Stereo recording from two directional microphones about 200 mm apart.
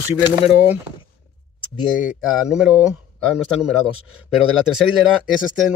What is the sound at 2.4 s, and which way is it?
Speech, 5° right (ahead or behind).